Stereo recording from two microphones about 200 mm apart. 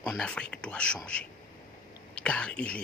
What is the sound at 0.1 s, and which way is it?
Speech, 5° left (ahead or behind).